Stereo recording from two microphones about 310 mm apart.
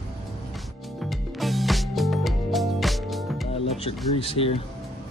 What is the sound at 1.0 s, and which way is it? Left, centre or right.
Music, centre.